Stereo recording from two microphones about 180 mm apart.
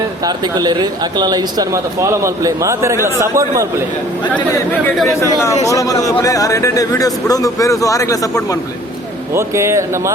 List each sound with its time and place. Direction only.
0.3 s speech: 25° right (ahead or behind)
4.7 s speech: 5° left (ahead or behind)
5.6 s speech: 20° left (ahead or behind)
9.3 s speech: 15° right (ahead or behind)